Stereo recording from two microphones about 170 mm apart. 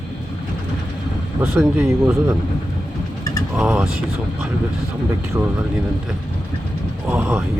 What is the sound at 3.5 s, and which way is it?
Speech, 5° right (ahead or behind).